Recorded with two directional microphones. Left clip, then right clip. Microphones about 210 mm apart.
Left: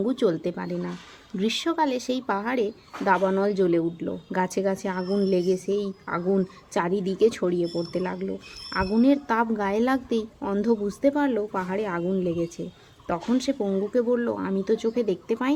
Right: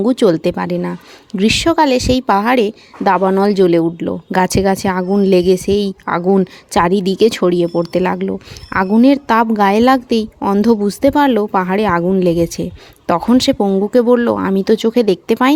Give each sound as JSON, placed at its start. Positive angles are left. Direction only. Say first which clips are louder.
{"t": 0.0, "sound": "speech", "louder": "right 12 dB", "side_deg": -40}